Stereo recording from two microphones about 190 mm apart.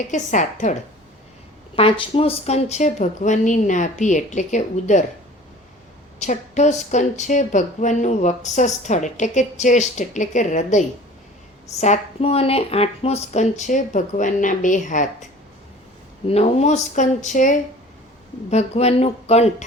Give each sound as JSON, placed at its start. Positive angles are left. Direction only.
{"t": 0.1, "sound": "a woman's voice", "side_deg": 40}
{"t": 6.1, "sound": "a woman's voice", "side_deg": 40}